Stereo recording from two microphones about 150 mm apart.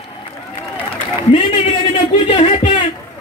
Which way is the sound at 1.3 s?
35° left (ahead or behind).